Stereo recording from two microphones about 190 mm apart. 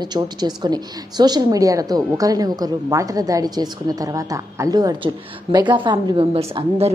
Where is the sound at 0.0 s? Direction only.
20° right (ahead or behind).